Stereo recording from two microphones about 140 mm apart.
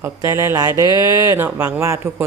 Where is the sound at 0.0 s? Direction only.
20° right (ahead or behind).